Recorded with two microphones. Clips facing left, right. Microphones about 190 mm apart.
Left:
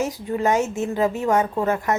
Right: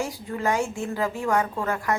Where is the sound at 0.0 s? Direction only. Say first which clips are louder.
Left 5 dB; 20° left (ahead or behind).